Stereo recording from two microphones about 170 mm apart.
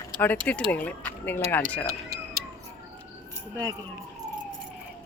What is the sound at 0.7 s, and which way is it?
Speech, 10° left (ahead or behind).